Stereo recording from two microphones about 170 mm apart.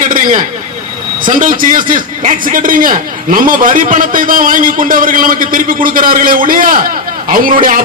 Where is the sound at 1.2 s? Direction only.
50° right (ahead or behind).